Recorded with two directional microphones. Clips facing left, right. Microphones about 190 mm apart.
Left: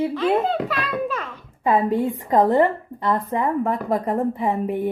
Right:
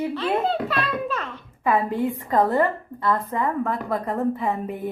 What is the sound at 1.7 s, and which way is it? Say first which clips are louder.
A woman's voice: left 3 dB; 20° left (ahead or behind).